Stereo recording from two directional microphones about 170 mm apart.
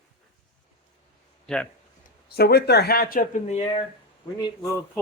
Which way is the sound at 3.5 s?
35° left (ahead or behind).